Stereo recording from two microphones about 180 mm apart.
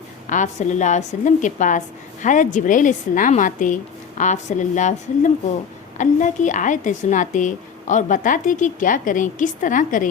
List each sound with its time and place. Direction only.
0.3 s a woman's voice: 45° left (ahead or behind)